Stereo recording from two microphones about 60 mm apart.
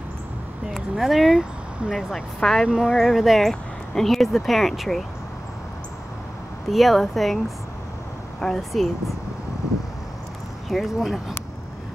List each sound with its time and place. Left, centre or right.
0.7 s speech: centre
2.1 s speech: centre
2.7 s speech: centre
6.7 s speech: centre
8.4 s speech: centre
10.7 s speech: centre